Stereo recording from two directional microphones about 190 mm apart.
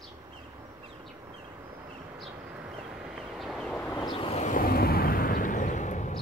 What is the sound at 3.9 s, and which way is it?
Vehicle, 20° left (ahead or behind).